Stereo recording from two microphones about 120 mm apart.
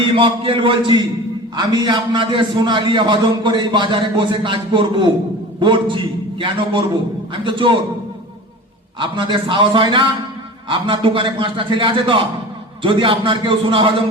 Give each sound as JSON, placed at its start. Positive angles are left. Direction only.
{"t": 0.0, "sound": "a man's voice", "side_deg": -45}
{"t": 9.0, "sound": "a man's voice", "side_deg": -45}